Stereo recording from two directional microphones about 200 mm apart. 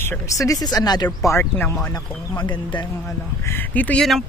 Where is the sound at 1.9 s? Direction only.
20° left (ahead or behind).